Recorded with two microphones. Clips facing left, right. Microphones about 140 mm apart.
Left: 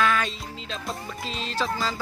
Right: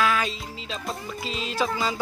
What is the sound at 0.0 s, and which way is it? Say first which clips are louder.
Music: even; 5° right (ahead or behind).